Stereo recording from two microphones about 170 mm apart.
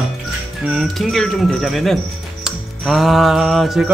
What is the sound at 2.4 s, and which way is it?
Music, centre (ahead or behind).